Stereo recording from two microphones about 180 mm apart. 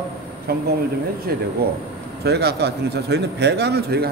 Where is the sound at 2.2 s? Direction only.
65° right (ahead or behind).